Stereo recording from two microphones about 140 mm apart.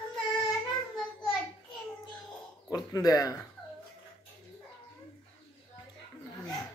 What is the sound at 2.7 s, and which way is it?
Speech, 25° left (ahead or behind).